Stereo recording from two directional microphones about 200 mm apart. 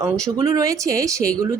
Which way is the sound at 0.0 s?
15° right (ahead or behind).